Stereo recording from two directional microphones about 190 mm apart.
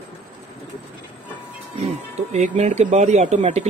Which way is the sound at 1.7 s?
35° right (ahead or behind).